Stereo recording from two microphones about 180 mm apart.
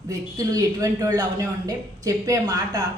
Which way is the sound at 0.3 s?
20° right (ahead or behind).